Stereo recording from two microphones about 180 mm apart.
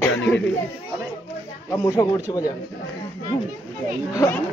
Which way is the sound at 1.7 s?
15° left (ahead or behind).